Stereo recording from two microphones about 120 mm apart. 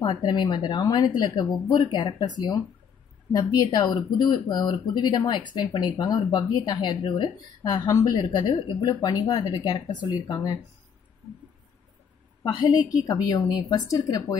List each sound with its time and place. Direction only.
0.0 s speech: 35° left (ahead or behind)
12.5 s speech: 35° left (ahead or behind)